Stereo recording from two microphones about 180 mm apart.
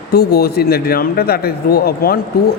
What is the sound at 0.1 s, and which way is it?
A man's voice, 60° left (ahead or behind).